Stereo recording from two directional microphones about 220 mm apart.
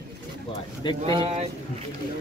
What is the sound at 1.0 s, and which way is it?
Speech, 25° right (ahead or behind).